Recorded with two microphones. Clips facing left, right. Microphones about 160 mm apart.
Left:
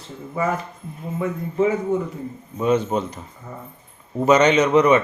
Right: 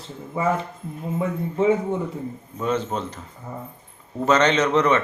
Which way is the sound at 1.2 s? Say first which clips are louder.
Left 2 dB; 30° right (ahead or behind).